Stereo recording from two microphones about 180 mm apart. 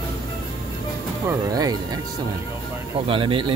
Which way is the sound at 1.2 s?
20° right (ahead or behind).